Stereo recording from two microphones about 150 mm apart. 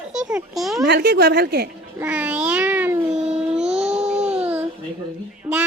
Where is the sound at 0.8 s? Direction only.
90° right.